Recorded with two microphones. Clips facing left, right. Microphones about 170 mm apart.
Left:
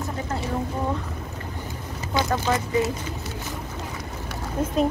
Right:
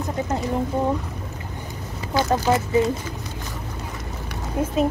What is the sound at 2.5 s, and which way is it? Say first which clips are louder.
Speech: right 5 dB; 20° right (ahead or behind).